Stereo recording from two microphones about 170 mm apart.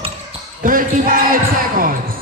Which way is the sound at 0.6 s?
55° right (ahead or behind).